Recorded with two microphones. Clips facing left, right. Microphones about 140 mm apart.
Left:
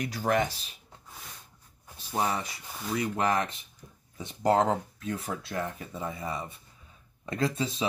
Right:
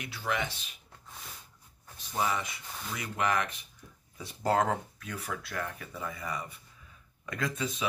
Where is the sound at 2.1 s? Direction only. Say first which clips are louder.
Left 2 dB; 35° left (ahead or behind).